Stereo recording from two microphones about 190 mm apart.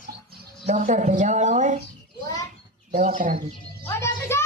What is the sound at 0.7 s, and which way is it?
A man's voice, 40° right (ahead or behind).